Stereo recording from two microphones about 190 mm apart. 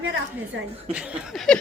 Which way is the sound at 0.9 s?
5° right (ahead or behind).